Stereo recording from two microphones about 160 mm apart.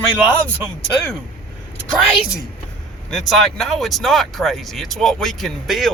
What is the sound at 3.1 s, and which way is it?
Speech, centre (ahead or behind).